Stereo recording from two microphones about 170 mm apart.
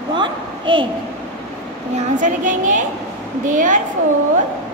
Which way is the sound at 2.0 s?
50° right (ahead or behind).